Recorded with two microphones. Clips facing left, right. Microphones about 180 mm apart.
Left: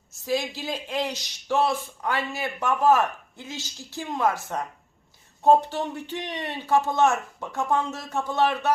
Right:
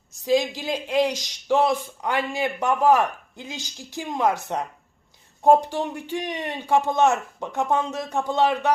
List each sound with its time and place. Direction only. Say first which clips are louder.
0.3 s speech: right 5 dB; 15° right (ahead or behind)